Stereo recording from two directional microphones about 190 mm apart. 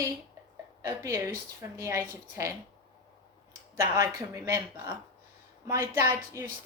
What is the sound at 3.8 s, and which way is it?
A woman's voice, 15° right (ahead or behind).